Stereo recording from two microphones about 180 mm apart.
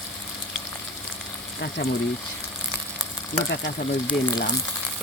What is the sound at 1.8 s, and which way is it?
Speech, 70° left (ahead or behind).